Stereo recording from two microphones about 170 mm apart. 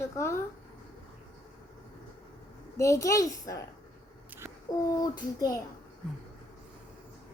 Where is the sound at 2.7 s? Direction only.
20° left (ahead or behind).